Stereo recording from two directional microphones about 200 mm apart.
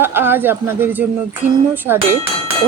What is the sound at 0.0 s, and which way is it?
Speech, 10° right (ahead or behind).